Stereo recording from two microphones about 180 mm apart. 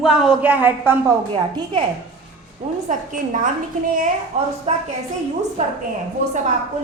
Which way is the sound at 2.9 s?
45° right (ahead or behind).